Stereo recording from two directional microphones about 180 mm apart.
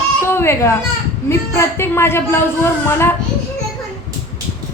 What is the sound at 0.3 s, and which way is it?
A child's voice, 15° left (ahead or behind).